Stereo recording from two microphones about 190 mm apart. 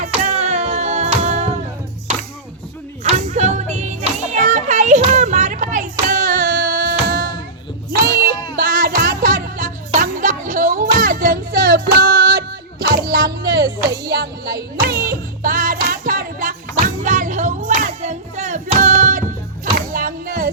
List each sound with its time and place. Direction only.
0.0 s music: 40° right (ahead or behind)
3.0 s music: 40° right (ahead or behind)